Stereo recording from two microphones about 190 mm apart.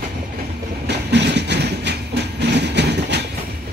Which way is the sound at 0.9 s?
65° right (ahead or behind).